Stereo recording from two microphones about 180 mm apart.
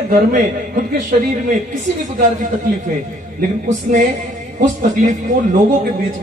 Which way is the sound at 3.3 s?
40° right (ahead or behind).